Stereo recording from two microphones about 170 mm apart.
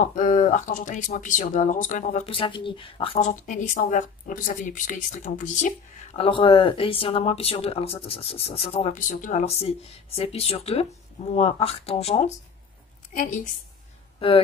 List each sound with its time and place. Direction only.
0.0 s a woman's voice: 50° left (ahead or behind)
2.2 s speech: 30° left (ahead or behind)
3.3 s a woman's voice: 45° left (ahead or behind)
6.1 s speech: 30° left (ahead or behind)
9.1 s a woman's voice: 50° left (ahead or behind)
9.5 s speech: 35° left (ahead or behind)
13.1 s a woman's voice: 50° left (ahead or behind)